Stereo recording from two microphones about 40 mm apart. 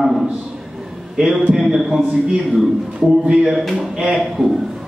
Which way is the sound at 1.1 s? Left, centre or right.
Centre.